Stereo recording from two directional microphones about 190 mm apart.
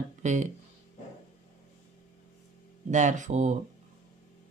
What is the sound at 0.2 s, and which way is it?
Speech, 40° right (ahead or behind).